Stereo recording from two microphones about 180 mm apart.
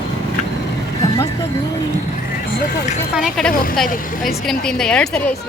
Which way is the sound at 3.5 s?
50° left (ahead or behind).